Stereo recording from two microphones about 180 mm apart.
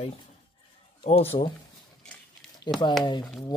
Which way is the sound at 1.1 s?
30° left (ahead or behind).